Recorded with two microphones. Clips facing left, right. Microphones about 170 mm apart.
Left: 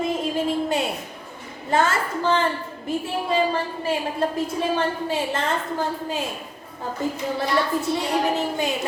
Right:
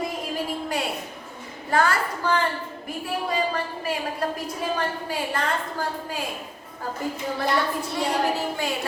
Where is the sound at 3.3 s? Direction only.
25° left (ahead or behind).